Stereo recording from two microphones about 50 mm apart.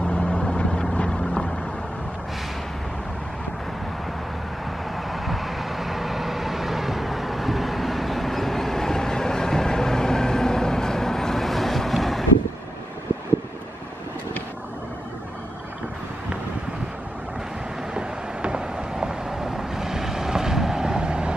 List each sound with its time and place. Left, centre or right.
0.0 s vehicle: left
5.1 s vehicle: centre
17.9 s vehicle: centre